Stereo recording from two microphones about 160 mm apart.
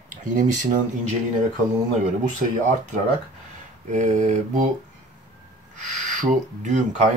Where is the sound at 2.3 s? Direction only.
50° right (ahead or behind).